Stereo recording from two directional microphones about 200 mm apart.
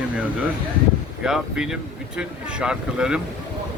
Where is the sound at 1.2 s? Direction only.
5° right (ahead or behind).